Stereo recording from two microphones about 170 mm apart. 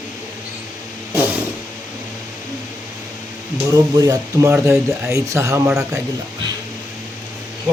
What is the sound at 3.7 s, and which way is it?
Speech, 20° right (ahead or behind).